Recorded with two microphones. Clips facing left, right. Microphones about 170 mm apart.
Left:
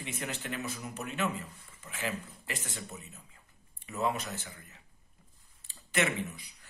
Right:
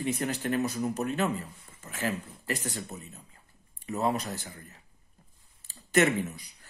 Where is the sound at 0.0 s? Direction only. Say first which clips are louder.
Right 9 dB; 40° right (ahead or behind).